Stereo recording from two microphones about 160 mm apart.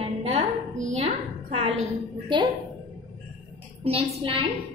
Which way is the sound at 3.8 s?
35° right (ahead or behind).